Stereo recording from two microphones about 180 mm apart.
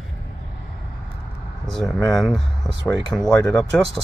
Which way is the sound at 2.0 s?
5° left (ahead or behind).